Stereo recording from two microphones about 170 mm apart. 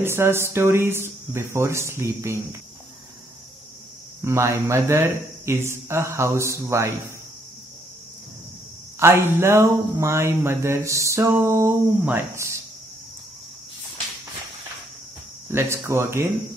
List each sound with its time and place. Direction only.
0.0 s speech: 15° right (ahead or behind)
4.2 s speech: 15° right (ahead or behind)
9.0 s speech: 15° right (ahead or behind)
15.5 s speech: 15° right (ahead or behind)